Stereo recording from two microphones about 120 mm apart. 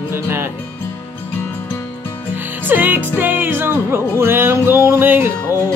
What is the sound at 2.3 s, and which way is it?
Music, 15° right (ahead or behind).